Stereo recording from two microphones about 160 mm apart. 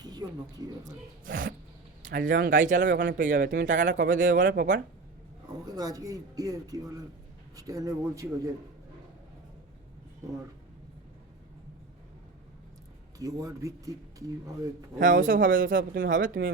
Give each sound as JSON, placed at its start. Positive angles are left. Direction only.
{"t": 0.0, "sound": "speech", "side_deg": -25}
{"t": 1.2, "sound": "speech", "side_deg": -55}
{"t": 3.3, "sound": "speech", "side_deg": -75}
{"t": 5.6, "sound": "speech", "side_deg": -25}
{"t": 13.1, "sound": "speech", "side_deg": -20}
{"t": 15.0, "sound": "speech", "side_deg": -55}